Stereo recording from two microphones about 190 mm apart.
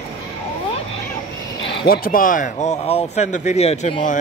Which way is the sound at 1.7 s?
55° left (ahead or behind).